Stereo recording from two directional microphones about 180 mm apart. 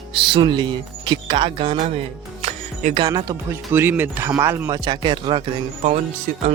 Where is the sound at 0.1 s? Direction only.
30° right (ahead or behind).